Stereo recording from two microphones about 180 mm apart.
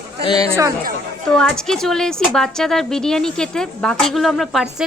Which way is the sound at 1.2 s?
5° left (ahead or behind).